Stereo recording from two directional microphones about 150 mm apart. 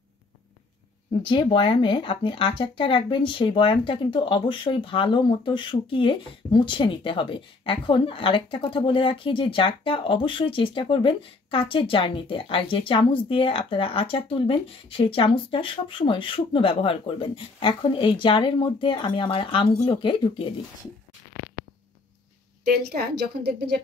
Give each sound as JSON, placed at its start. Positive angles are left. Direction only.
{"t": 1.3, "sound": "speech", "side_deg": 35}
{"t": 22.7, "sound": "a woman's voice", "side_deg": -85}